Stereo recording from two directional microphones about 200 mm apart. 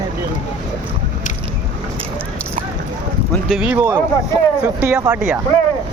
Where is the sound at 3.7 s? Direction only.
15° right (ahead or behind).